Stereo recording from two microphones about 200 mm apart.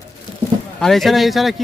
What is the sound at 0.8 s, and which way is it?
Speech, centre (ahead or behind).